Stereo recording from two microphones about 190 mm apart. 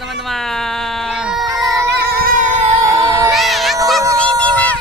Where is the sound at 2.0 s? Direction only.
50° right (ahead or behind).